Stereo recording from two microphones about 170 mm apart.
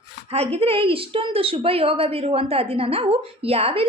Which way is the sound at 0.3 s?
35° right (ahead or behind).